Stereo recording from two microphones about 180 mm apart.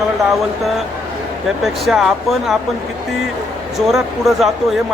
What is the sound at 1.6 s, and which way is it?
Speech, centre (ahead or behind).